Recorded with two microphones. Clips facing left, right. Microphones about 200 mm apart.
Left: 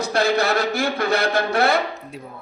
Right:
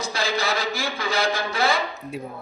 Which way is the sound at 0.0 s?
65° left (ahead or behind).